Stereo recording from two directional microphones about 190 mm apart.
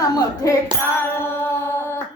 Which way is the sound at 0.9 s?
10° left (ahead or behind).